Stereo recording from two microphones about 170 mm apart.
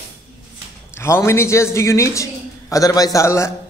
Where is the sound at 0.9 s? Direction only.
15° left (ahead or behind).